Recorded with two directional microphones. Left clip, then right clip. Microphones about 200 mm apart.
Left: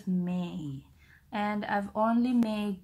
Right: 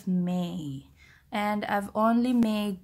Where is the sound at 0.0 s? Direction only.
35° right (ahead or behind).